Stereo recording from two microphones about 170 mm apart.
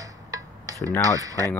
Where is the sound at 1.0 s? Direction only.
20° right (ahead or behind).